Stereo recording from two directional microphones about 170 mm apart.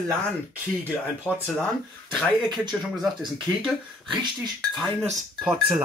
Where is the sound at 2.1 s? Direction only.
5° left (ahead or behind).